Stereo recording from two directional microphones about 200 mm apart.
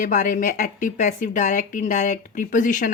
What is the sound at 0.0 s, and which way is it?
Speech, 40° left (ahead or behind).